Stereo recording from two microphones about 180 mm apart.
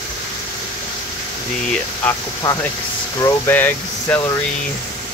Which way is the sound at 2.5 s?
20° left (ahead or behind).